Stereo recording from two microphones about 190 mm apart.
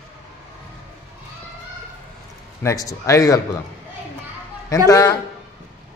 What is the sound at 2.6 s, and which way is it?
Speech, 15° left (ahead or behind).